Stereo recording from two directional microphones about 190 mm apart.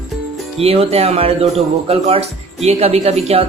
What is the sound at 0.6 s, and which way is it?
Speech, 30° right (ahead or behind).